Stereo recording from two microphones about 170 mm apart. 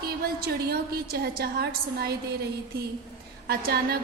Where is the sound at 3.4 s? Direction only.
65° right (ahead or behind).